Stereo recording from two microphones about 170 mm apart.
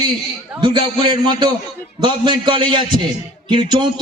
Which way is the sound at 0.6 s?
25° right (ahead or behind).